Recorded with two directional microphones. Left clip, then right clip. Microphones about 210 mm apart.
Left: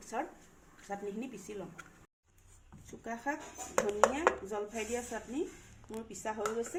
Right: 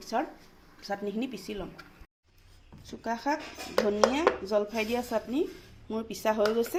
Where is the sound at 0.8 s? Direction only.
50° right (ahead or behind).